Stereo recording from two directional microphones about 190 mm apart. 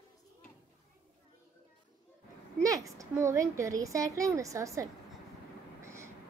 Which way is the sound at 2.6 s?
15° right (ahead or behind).